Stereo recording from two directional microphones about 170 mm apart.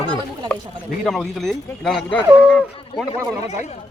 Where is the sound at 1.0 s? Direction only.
Centre (ahead or behind).